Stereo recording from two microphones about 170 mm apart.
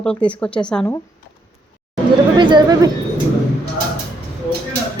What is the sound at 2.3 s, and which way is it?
Speech, 25° right (ahead or behind).